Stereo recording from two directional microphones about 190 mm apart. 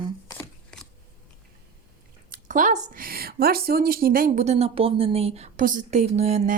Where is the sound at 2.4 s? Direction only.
40° right (ahead or behind).